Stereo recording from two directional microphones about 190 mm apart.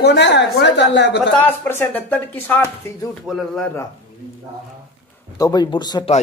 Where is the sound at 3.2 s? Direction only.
Centre (ahead or behind).